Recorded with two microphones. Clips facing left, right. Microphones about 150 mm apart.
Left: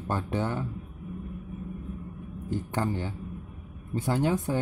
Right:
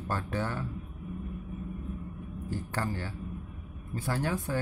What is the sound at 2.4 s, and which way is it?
Speech, 20° left (ahead or behind).